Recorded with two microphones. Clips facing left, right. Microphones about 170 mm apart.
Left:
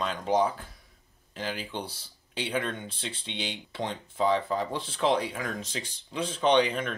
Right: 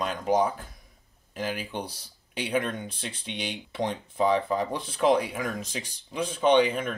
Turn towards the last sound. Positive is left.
turn(degrees=-5)  # may be behind; listen again after turning